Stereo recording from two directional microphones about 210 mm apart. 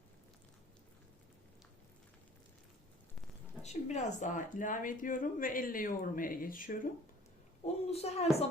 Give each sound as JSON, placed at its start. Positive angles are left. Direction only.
{"t": 3.6, "sound": "speech", "side_deg": 35}
{"t": 7.6, "sound": "a woman's voice", "side_deg": 30}